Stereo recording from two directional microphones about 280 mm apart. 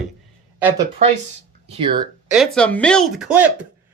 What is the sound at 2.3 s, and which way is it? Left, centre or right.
Speech, centre.